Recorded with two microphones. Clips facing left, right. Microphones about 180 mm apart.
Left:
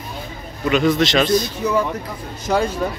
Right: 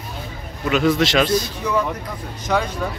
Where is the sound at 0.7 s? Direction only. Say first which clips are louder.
Left 1 dB; 5° right (ahead or behind).